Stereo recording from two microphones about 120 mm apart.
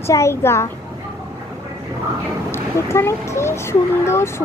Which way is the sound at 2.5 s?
20° left (ahead or behind).